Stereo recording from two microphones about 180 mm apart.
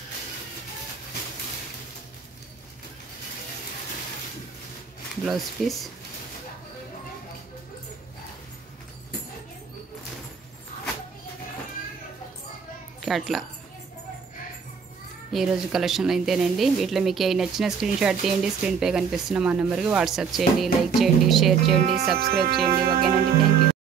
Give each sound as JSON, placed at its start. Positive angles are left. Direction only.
{"t": 5.2, "sound": "speech", "side_deg": 0}
{"t": 13.0, "sound": "a child's voice", "side_deg": 0}
{"t": 15.3, "sound": "speech", "side_deg": 0}
{"t": 22.1, "sound": "speech", "side_deg": -60}